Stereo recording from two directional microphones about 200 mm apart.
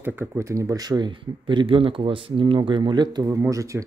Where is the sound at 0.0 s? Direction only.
10° right (ahead or behind).